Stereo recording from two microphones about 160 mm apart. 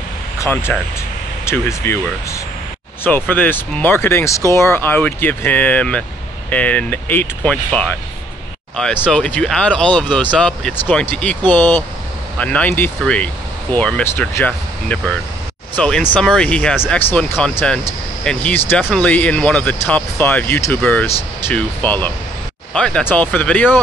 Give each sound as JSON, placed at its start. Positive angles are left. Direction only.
{"t": 0.4, "sound": "speech", "side_deg": 15}